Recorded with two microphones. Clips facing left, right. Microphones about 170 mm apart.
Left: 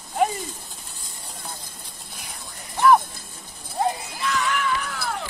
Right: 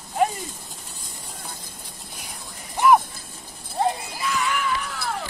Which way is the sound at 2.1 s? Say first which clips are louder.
Even; centre (ahead or behind).